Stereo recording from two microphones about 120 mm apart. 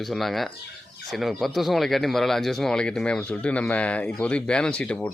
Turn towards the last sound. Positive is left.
turn(degrees=10)  # may be behind; listen again after turning